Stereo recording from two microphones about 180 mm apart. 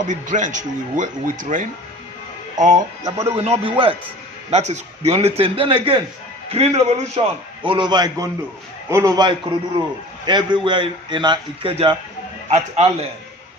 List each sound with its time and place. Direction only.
0.0 s a man's voice: 45° right (ahead or behind); by 11.7 s 25° right (ahead or behind)
12.5 s a man's voice: 35° right (ahead or behind)